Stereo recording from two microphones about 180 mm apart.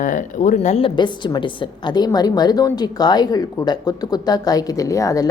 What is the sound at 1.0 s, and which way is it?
A woman's voice, 25° left (ahead or behind).